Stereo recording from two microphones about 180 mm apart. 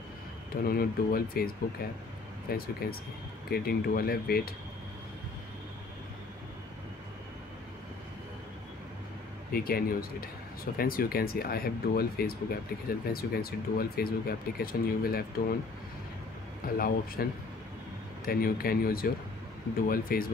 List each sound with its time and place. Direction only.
0.7 s speech: 55° left (ahead or behind)
2.5 s speech: 55° left (ahead or behind)
9.5 s speech: 55° left (ahead or behind)
16.7 s speech: 55° left (ahead or behind)